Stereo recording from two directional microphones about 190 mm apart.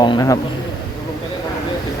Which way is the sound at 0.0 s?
20° left (ahead or behind).